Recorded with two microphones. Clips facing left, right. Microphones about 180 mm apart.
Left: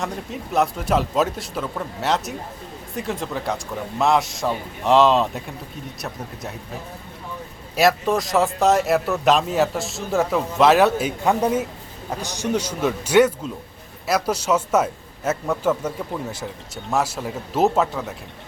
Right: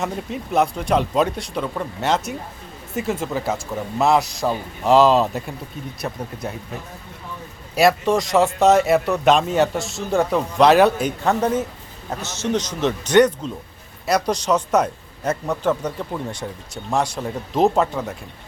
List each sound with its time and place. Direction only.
0.0 s speech: centre (ahead or behind)
7.8 s a man's voice: centre (ahead or behind)